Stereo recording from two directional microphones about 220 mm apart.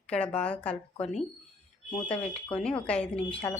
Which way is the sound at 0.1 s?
5° left (ahead or behind).